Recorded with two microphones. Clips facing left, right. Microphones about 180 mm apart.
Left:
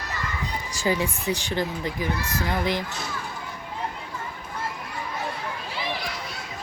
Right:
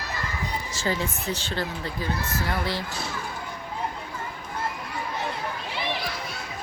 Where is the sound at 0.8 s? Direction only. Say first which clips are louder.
Left 4 dB; 15° left (ahead or behind).